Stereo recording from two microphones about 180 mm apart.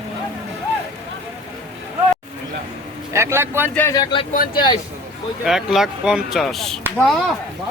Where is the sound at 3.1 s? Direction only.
15° right (ahead or behind).